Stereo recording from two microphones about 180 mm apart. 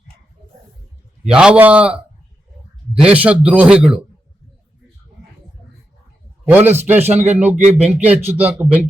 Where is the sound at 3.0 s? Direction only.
5° right (ahead or behind).